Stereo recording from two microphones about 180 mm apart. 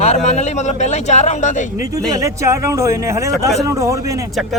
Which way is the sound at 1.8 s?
20° right (ahead or behind).